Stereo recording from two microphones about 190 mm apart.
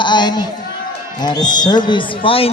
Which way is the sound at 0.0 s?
25° left (ahead or behind).